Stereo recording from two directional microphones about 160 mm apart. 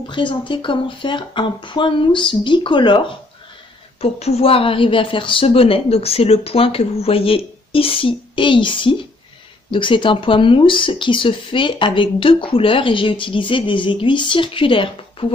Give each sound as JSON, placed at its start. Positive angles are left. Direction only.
{"t": 0.1, "sound": "speech", "side_deg": 30}